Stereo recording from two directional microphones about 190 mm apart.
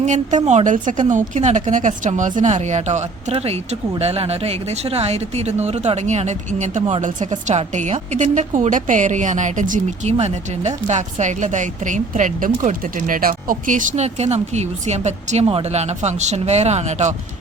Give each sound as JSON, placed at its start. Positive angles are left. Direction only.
{"t": 0.0, "sound": "speech", "side_deg": -40}